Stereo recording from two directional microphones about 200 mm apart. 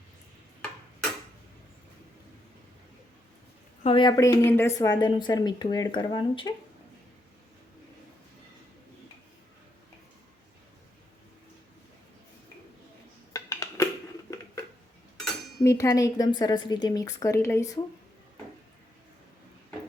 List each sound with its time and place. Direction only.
3.8 s speech: 25° left (ahead or behind)
13.3 s a sound: 15° left (ahead or behind)
15.6 s a woman's voice: 15° left (ahead or behind)